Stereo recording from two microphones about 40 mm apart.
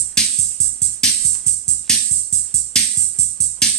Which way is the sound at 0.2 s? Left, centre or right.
Centre.